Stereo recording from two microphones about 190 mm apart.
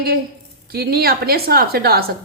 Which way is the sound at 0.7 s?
55° right (ahead or behind).